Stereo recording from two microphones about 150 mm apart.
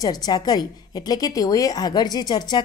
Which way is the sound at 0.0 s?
25° left (ahead or behind).